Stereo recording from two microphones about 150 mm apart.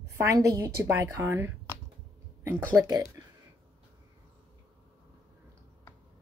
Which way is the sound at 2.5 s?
25° right (ahead or behind).